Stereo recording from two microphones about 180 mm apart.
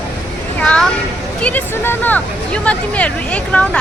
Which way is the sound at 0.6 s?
5° left (ahead or behind).